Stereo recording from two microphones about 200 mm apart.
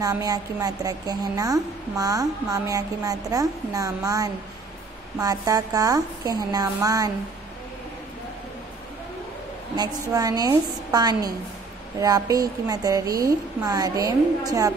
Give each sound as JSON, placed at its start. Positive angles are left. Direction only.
{"t": 0.0, "sound": "a woman's voice", "side_deg": -20}
{"t": 10.0, "sound": "a woman's voice", "side_deg": -20}